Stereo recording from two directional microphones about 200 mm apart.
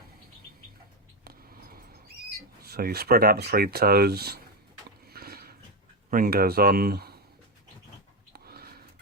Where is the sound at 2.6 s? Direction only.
50° right (ahead or behind).